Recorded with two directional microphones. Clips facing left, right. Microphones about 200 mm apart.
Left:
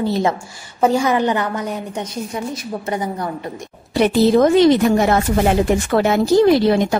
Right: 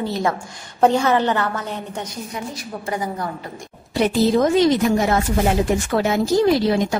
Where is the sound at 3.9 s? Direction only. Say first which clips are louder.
Left 4 dB; 65° left (ahead or behind).